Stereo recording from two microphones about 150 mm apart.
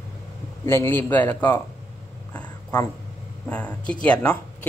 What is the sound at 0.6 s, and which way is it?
Speech, 15° left (ahead or behind).